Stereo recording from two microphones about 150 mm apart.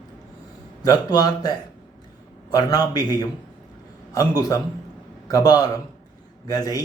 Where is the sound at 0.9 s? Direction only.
25° left (ahead or behind).